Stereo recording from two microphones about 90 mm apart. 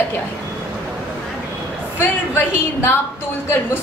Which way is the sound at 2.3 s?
25° left (ahead or behind).